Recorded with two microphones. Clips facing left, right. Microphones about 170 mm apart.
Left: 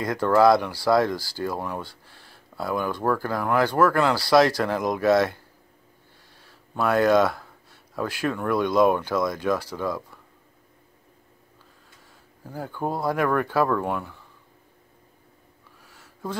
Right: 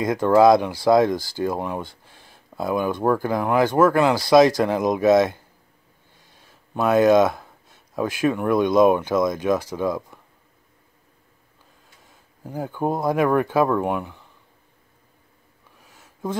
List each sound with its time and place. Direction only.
0.0 s speech: 20° right (ahead or behind)
12.4 s speech: 15° right (ahead or behind)
15.8 s a sound: 20° right (ahead or behind)